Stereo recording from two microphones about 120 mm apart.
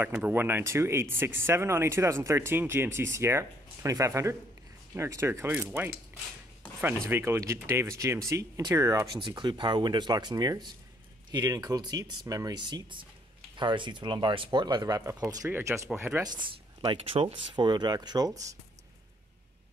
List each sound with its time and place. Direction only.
0.0 s speech: 15° right (ahead or behind)
16.3 s speech: 45° right (ahead or behind)